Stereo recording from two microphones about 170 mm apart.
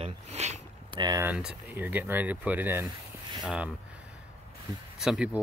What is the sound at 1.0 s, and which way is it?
Speech, 20° right (ahead or behind).